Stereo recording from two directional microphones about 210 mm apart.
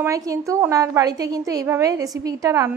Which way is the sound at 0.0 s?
15° right (ahead or behind).